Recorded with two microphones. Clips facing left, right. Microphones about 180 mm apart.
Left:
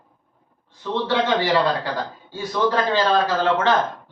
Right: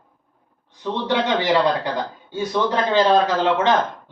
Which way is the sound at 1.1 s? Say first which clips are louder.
Right 1 dB; 20° right (ahead or behind).